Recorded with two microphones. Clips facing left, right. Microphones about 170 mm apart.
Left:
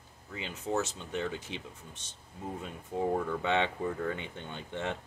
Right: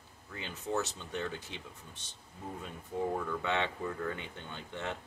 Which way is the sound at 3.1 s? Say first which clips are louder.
Left 4 dB; 20° left (ahead or behind).